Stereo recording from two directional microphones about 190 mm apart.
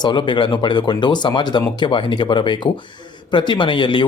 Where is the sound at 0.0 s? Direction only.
25° left (ahead or behind).